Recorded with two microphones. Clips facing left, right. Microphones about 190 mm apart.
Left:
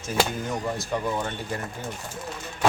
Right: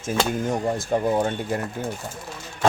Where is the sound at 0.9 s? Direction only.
40° right (ahead or behind).